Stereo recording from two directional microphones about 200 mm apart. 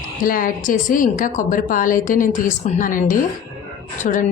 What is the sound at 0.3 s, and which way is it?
A woman's voice, 45° left (ahead or behind).